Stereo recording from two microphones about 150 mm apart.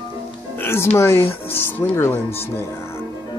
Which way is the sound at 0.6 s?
15° left (ahead or behind).